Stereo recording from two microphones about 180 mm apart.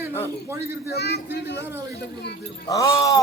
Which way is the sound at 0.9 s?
65° left (ahead or behind).